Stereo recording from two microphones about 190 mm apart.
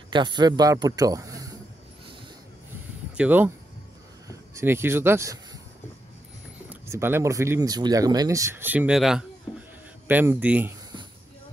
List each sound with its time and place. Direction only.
0.1 s a man's voice: 25° right (ahead or behind)
3.2 s speech: 10° right (ahead or behind)
6.7 s speech: 10° right (ahead or behind)